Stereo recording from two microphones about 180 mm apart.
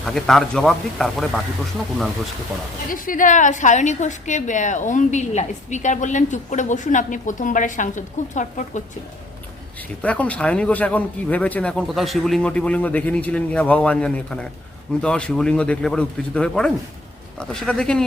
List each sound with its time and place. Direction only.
0.0 s speech: centre (ahead or behind)
2.9 s a woman's voice: 50° left (ahead or behind)
10.0 s speech: 5° left (ahead or behind)